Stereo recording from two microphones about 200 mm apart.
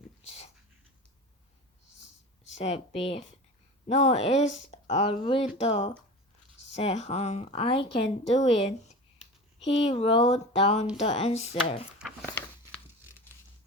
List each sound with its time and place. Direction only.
0.2 s dog: 30° left (ahead or behind)
2.6 s speech: 30° left (ahead or behind)
12.2 s a sound: 10° left (ahead or behind)